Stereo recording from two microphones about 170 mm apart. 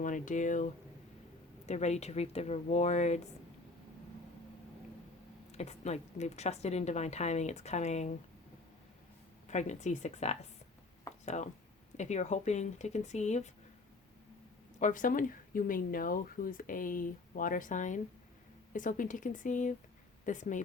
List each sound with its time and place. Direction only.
0.0 s speech: 50° left (ahead or behind)
5.5 s speech: 40° left (ahead or behind)
9.5 s speech: 45° left (ahead or behind)
11.1 s a sound: 15° left (ahead or behind)
11.9 s speech: 45° left (ahead or behind)
14.8 s speech: 50° left (ahead or behind)